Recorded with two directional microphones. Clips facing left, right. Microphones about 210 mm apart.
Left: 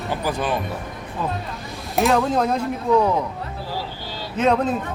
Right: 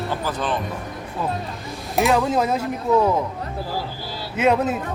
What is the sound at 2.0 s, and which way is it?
Speech, centre (ahead or behind).